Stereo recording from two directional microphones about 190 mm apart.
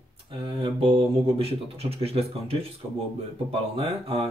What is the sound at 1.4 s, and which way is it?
Speech, 30° right (ahead or behind).